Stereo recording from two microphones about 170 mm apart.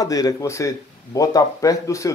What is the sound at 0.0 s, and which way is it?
Speech, 20° left (ahead or behind).